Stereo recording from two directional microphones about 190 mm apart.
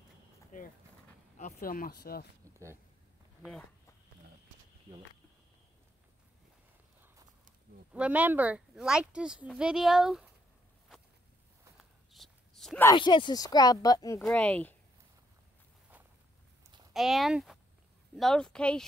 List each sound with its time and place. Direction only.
0.5 s speech: 45° left (ahead or behind)
3.4 s speech: 10° right (ahead or behind)
7.9 s speech: 5° right (ahead or behind)
12.1 s walk: centre (ahead or behind)
12.8 s speech: 25° left (ahead or behind); by 14.8 s 5° left (ahead or behind)
16.9 s speech: centre (ahead or behind)